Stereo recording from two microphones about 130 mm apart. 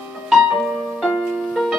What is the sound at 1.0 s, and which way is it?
Music, centre (ahead or behind).